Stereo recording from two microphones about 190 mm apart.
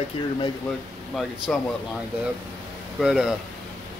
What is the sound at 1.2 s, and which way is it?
Speech, centre (ahead or behind).